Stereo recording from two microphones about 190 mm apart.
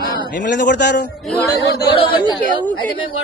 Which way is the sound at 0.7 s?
65° left (ahead or behind).